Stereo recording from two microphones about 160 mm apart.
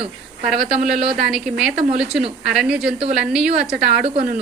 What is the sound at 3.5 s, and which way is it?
Speech, 90° right.